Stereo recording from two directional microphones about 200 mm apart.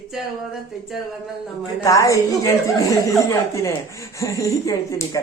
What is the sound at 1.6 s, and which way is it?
Speech, 15° left (ahead or behind).